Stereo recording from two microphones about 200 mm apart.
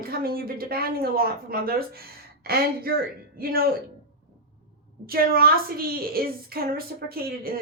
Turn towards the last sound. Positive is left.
turn(degrees=-50)  # may be behind; listen again after turning